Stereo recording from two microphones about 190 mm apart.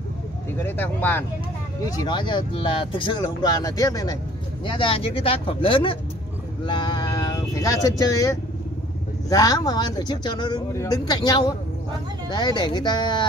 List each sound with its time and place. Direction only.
0.6 s speech: 10° left (ahead or behind)
1.9 s speech: 20° left (ahead or behind)